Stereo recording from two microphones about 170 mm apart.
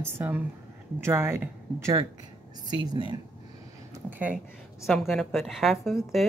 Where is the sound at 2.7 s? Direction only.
25° right (ahead or behind).